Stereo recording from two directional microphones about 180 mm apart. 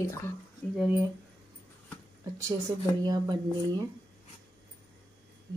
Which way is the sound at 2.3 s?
15° right (ahead or behind).